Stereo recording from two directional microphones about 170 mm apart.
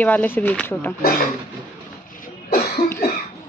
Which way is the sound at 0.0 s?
10° left (ahead or behind).